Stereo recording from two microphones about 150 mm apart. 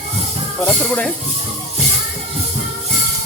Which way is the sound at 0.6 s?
5° left (ahead or behind).